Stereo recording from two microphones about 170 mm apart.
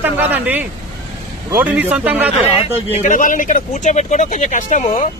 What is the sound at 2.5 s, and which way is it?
Speech, 35° left (ahead or behind).